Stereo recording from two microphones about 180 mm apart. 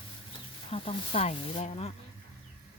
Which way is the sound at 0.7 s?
30° left (ahead or behind).